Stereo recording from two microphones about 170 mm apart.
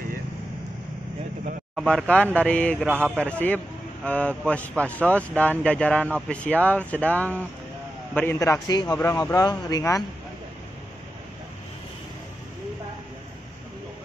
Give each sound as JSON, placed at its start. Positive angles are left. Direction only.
{"t": 1.8, "sound": "a man's voice", "side_deg": 0}
{"t": 2.9, "sound": "speech", "side_deg": -10}
{"t": 3.3, "sound": "a man's voice", "side_deg": 5}
{"t": 9.1, "sound": "a man's voice", "side_deg": 20}